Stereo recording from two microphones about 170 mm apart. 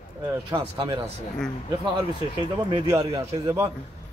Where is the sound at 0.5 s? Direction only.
25° right (ahead or behind).